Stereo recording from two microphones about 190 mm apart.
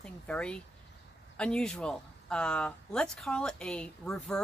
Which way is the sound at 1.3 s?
5° left (ahead or behind).